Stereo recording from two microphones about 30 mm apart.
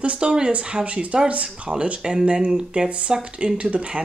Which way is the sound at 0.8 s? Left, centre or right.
Right.